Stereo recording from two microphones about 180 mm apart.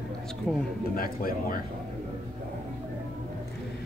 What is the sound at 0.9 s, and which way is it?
Speech, 55° left (ahead or behind).